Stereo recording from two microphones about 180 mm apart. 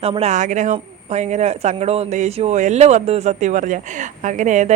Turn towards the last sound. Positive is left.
turn(degrees=-40)  # may be behind; listen again after turning